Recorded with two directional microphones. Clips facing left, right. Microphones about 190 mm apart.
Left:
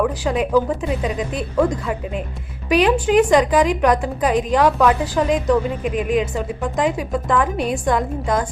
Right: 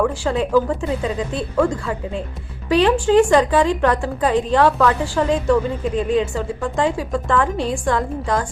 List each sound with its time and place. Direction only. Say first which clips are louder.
0.3 s a woman's voice: even; 15° left (ahead or behind)
2.6 s a woman's voice: right 1 dB; 15° left (ahead or behind)